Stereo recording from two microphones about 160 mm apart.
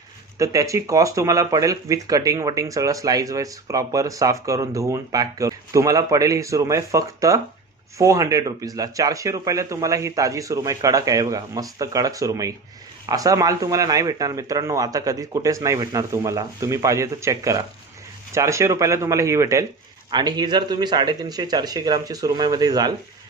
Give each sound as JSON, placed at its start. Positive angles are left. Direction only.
{"t": 0.3, "sound": "speech", "side_deg": -20}